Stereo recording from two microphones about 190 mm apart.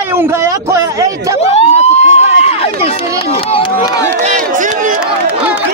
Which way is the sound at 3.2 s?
30° left (ahead or behind).